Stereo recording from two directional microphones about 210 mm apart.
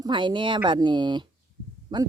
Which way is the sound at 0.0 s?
20° right (ahead or behind).